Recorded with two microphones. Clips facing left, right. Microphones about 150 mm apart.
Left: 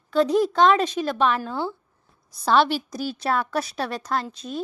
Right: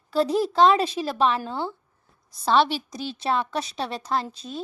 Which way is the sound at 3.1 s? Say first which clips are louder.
Left 1 dB; 25° right (ahead or behind).